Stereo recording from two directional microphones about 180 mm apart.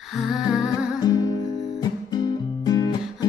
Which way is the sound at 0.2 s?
5° right (ahead or behind).